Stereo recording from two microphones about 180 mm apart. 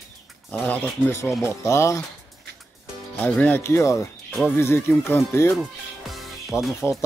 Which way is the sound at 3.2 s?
10° left (ahead or behind).